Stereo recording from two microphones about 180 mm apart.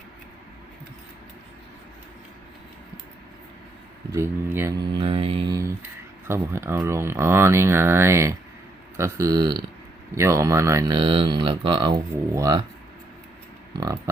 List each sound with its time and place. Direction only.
4.1 s speech: 15° right (ahead or behind)
4.8 s speech: 25° right (ahead or behind)
6.2 s speech: 15° right (ahead or behind)
13.7 s speech: 20° right (ahead or behind)